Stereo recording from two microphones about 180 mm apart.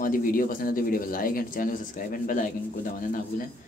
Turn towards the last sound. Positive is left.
turn(degrees=50)  # may be behind; listen again after turning